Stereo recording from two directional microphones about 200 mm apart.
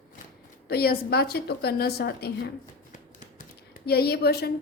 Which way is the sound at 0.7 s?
50° left (ahead or behind).